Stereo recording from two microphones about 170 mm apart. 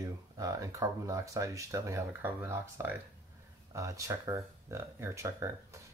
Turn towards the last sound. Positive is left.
turn(degrees=-15)  # may be behind; listen again after turning